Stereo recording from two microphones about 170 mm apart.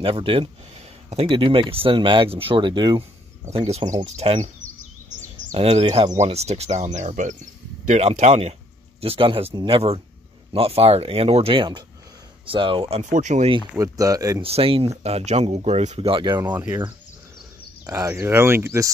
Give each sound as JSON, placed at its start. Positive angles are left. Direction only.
{"t": 0.0, "sound": "speech", "side_deg": -30}
{"t": 3.5, "sound": "speech", "side_deg": -40}
{"t": 13.0, "sound": "speech", "side_deg": -45}
{"t": 13.7, "sound": "speech", "side_deg": -20}
{"t": 14.4, "sound": "speech", "side_deg": -35}
{"t": 16.1, "sound": "speech", "side_deg": -30}
{"t": 16.5, "sound": "speech", "side_deg": -10}
{"t": 17.8, "sound": "speech", "side_deg": -20}